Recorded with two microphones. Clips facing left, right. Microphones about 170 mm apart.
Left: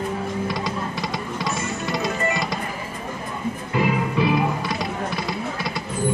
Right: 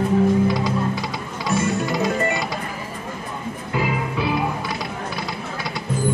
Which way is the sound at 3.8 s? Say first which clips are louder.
Left 2 dB; centre (ahead or behind).